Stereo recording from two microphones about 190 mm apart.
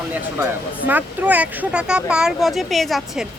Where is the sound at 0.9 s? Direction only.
10° right (ahead or behind).